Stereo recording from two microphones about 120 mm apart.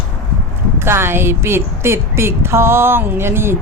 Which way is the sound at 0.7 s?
20° right (ahead or behind).